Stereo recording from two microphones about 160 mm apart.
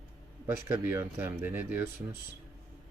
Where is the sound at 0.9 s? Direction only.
15° right (ahead or behind).